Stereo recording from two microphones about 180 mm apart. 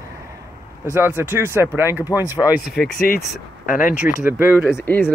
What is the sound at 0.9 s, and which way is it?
Speech, 10° right (ahead or behind).